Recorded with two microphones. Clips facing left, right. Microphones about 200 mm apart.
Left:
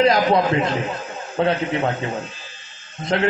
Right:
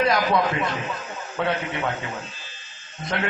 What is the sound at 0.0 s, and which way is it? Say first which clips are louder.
Speech: left 5 dB; 25° left (ahead or behind).